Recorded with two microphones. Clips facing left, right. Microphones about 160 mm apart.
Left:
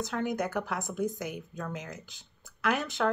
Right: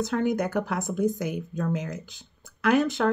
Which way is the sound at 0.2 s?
40° right (ahead or behind).